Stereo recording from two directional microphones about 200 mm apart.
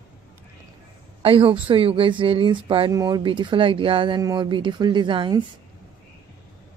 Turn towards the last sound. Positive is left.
turn(degrees=-25)  # may be behind; listen again after turning